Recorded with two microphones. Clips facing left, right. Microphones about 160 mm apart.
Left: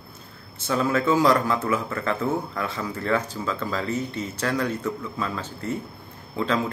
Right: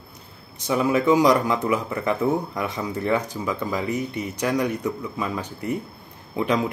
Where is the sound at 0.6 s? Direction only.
15° right (ahead or behind).